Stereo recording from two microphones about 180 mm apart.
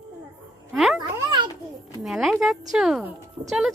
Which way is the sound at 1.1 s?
25° right (ahead or behind).